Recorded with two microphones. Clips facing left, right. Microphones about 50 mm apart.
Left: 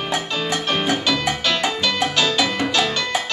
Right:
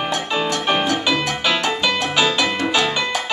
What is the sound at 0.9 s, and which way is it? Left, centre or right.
Music, right.